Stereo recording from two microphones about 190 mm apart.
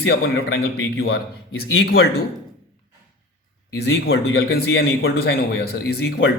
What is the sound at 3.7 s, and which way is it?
A man's voice, 60° left (ahead or behind).